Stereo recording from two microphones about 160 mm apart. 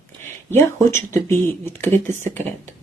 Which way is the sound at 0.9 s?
15° left (ahead or behind).